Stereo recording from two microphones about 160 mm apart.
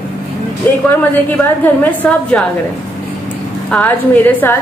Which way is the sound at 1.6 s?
10° left (ahead or behind).